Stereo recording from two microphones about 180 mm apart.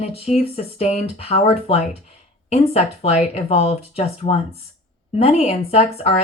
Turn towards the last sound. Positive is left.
turn(degrees=35)  # may be behind; listen again after turning